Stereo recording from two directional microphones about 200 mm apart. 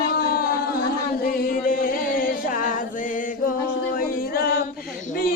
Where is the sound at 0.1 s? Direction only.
50° left (ahead or behind).